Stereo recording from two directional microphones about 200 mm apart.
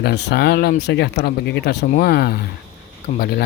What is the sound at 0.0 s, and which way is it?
A man's voice, 55° left (ahead or behind).